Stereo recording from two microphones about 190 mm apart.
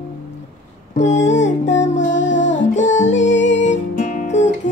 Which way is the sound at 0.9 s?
40° left (ahead or behind).